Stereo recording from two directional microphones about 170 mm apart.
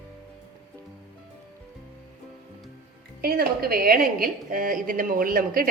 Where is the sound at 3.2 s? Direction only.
60° right (ahead or behind).